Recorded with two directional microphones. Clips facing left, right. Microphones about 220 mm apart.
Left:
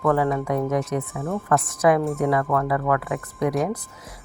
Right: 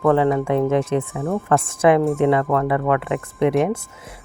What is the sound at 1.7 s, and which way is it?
Speech, 25° right (ahead or behind).